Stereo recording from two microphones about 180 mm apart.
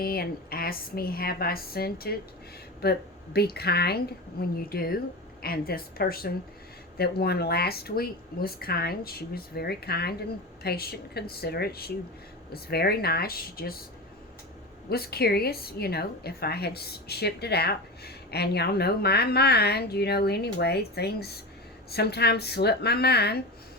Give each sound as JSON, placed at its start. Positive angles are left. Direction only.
{"t": 0.0, "sound": "a woman's voice", "side_deg": 55}
{"t": 14.8, "sound": "a woman's voice", "side_deg": 60}